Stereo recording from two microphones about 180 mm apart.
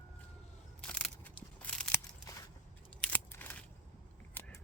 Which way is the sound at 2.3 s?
20° left (ahead or behind).